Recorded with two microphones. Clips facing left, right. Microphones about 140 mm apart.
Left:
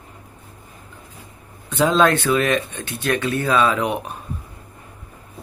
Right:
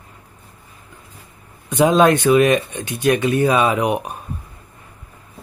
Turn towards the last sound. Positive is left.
turn(degrees=-15)  # may be behind; listen again after turning